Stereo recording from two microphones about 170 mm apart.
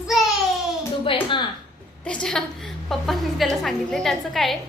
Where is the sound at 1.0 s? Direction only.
30° left (ahead or behind).